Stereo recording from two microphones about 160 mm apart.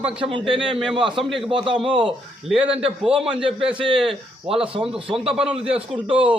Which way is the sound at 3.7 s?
30° right (ahead or behind).